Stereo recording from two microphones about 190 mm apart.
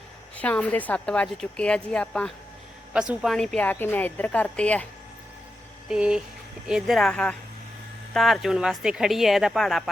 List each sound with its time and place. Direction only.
0.3 s a woman's voice: 5° left (ahead or behind)
5.9 s a woman's voice: 5° right (ahead or behind)